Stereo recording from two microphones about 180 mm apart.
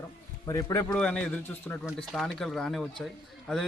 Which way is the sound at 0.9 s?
5° left (ahead or behind).